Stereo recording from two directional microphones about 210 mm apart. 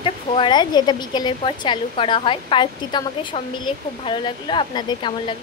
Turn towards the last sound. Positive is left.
turn(degrees=25)  # may be behind; listen again after turning